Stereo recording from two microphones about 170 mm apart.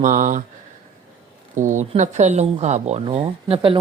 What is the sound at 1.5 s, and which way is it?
Speech, 50° right (ahead or behind).